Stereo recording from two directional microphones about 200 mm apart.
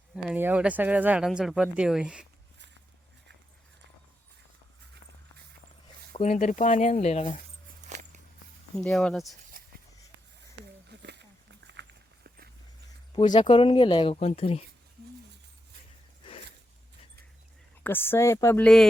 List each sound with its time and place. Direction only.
0.3 s speech: 10° right (ahead or behind)
6.1 s speech: 40° left (ahead or behind)
7.9 s biting: 35° right (ahead or behind)
8.7 s speech: 5° left (ahead or behind)
11.0 s dog: 60° right (ahead or behind)
13.1 s speech: 25° left (ahead or behind)
17.8 s speech: 10° left (ahead or behind)